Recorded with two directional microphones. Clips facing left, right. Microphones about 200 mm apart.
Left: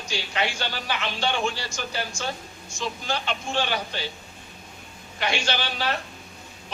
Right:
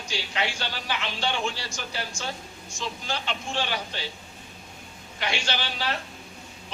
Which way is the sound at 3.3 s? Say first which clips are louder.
Left 3 dB; 50° left (ahead or behind).